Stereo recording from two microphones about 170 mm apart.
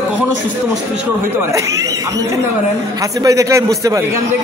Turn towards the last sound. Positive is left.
turn(degrees=-20)  # may be behind; listen again after turning